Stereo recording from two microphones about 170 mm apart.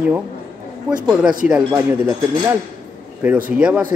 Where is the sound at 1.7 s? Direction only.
15° right (ahead or behind).